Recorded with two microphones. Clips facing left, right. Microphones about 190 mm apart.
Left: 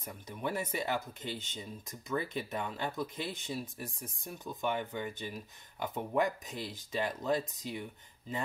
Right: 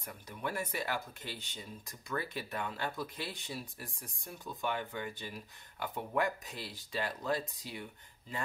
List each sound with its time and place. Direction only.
0.0 s speech: 20° left (ahead or behind)